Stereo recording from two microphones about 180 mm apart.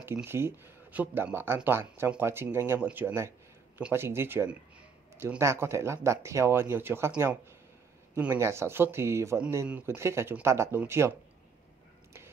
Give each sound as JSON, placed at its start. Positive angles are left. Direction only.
{"t": 0.0, "sound": "speech", "side_deg": -10}